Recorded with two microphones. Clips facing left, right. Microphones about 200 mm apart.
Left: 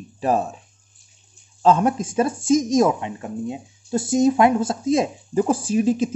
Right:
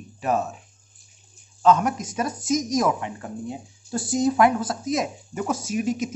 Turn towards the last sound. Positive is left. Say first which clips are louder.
# left 6 dB
turn(degrees=30)  # may be behind; listen again after turning